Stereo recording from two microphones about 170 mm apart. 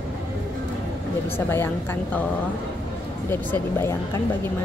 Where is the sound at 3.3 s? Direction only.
15° left (ahead or behind).